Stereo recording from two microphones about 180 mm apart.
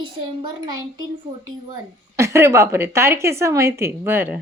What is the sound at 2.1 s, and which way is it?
A woman's voice, 15° right (ahead or behind).